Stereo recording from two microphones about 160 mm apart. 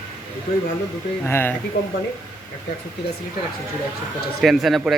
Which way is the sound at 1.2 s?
10° left (ahead or behind).